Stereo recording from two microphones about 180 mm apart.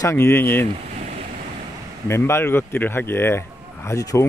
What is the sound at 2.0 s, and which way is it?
Speech, 15° left (ahead or behind).